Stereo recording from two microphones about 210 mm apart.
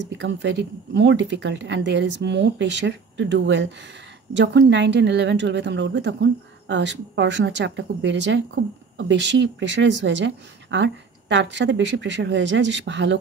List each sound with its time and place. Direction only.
0.0 s a woman's voice: 60° right (ahead or behind)